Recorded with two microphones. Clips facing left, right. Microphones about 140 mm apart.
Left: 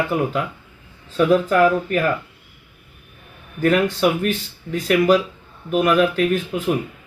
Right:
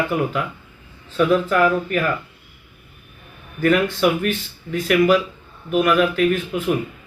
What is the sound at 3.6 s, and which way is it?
Speech, 35° left (ahead or behind).